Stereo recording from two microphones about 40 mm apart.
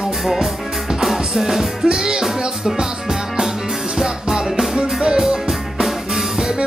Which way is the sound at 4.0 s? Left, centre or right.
Centre.